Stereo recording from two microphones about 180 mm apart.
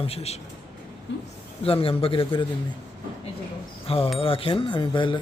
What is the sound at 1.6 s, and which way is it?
Speech, 30° left (ahead or behind).